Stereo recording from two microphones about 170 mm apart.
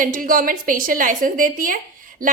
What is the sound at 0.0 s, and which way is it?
A woman's voice, 55° right (ahead or behind).